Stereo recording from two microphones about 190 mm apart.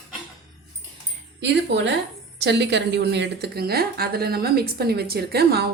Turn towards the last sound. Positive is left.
turn(degrees=-55)  # may be behind; listen again after turning